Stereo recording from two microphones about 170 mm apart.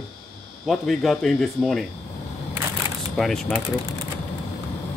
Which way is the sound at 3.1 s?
Centre (ahead or behind).